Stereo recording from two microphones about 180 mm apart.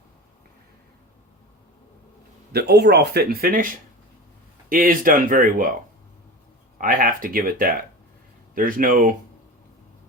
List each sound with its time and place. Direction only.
2.5 s speech: 65° right (ahead or behind)
4.7 s speech: 50° right (ahead or behind)
6.7 s speech: 50° right (ahead or behind)